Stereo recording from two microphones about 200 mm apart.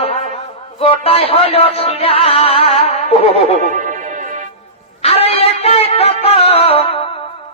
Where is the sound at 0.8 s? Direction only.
30° left (ahead or behind).